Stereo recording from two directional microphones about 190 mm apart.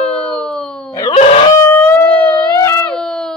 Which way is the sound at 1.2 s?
30° left (ahead or behind).